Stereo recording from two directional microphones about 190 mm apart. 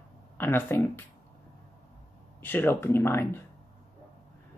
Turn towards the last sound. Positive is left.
turn(degrees=10)  # may be behind; listen again after turning